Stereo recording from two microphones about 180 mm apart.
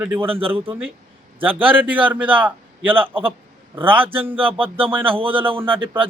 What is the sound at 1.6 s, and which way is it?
A man's voice, 10° right (ahead or behind).